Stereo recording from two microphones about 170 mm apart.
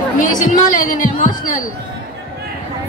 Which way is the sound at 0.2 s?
50° left (ahead or behind).